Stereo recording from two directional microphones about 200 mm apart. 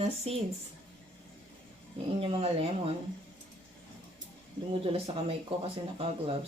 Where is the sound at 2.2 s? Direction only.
30° right (ahead or behind).